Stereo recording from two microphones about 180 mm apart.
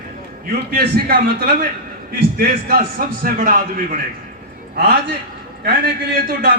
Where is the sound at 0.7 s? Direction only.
55° right (ahead or behind).